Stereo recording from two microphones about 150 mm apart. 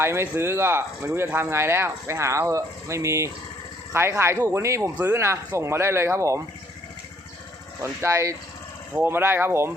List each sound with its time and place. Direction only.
0.0 s speech: 15° right (ahead or behind)
7.8 s speech: 20° right (ahead or behind)